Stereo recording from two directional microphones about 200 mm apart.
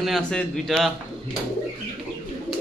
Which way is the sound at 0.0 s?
Centre (ahead or behind).